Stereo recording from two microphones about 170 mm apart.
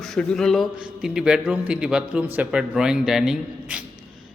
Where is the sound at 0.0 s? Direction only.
5° left (ahead or behind).